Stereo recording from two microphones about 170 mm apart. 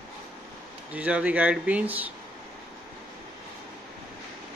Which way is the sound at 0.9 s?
10° right (ahead or behind).